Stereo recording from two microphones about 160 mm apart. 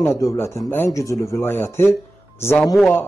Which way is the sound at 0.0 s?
20° left (ahead or behind).